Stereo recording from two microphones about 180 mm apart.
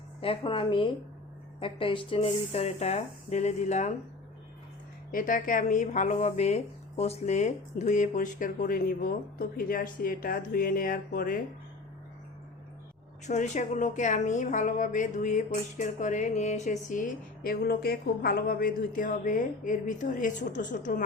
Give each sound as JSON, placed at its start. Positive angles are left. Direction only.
{"t": 0.2, "sound": "speech", "side_deg": 30}
{"t": 5.1, "sound": "speech", "side_deg": 50}
{"t": 13.2, "sound": "speech", "side_deg": 40}